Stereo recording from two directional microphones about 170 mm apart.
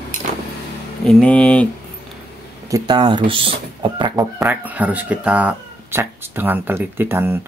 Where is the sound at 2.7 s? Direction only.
25° right (ahead or behind).